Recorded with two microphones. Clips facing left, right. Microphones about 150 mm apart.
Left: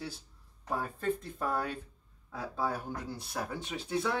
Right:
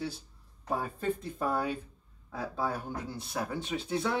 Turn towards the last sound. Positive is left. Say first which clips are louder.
# right 1 dB
turn(degrees=0)  # may be behind; listen again after turning